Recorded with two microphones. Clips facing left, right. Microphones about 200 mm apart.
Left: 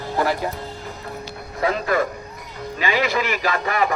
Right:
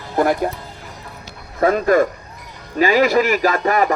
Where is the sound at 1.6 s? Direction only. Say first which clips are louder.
Right 6 dB; 50° right (ahead or behind).